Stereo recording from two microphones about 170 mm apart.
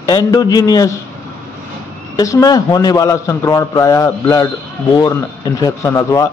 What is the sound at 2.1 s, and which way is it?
A man's voice, 20° left (ahead or behind).